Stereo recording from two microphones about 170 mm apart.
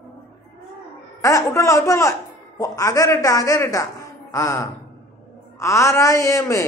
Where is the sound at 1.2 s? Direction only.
20° left (ahead or behind).